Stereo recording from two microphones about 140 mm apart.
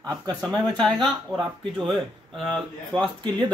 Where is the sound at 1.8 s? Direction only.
Centre (ahead or behind).